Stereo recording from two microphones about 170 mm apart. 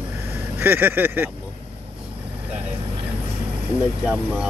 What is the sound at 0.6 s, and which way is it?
Speech, 10° right (ahead or behind).